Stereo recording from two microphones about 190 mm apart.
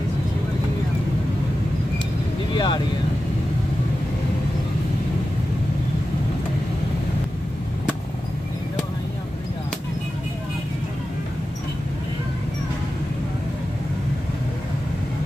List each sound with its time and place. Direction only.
2.5 s speech: 25° left (ahead or behind)